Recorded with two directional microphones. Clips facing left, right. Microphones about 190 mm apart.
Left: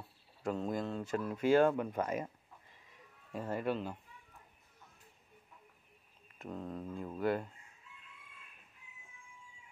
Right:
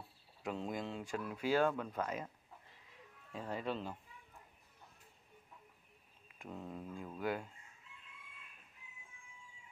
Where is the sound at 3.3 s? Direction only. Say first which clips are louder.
Left 5 dB; 5° left (ahead or behind).